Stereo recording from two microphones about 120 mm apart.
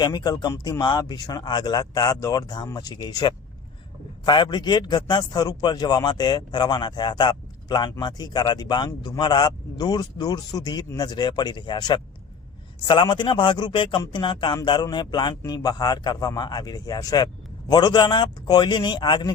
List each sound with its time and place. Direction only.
0.0 s speech: 35° left (ahead or behind)